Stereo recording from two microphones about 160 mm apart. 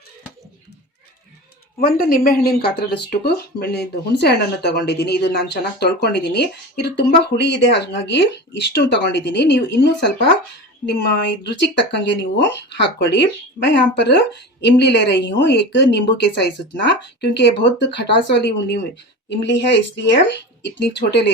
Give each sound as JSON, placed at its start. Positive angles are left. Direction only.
{"t": 1.8, "sound": "speech", "side_deg": 65}
{"t": 11.4, "sound": "speech", "side_deg": 90}